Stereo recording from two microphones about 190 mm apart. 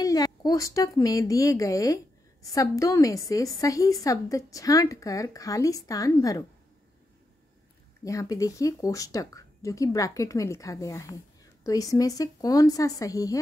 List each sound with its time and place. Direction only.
0.0 s speech: 20° left (ahead or behind)
8.0 s speech: 15° left (ahead or behind)